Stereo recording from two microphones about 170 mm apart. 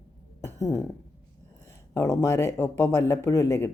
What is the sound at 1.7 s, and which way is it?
Speech, 20° left (ahead or behind).